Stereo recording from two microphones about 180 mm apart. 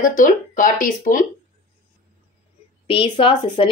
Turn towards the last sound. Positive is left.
turn(degrees=30)  # may be behind; listen again after turning